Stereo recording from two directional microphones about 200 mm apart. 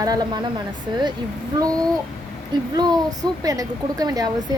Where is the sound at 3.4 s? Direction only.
15° right (ahead or behind).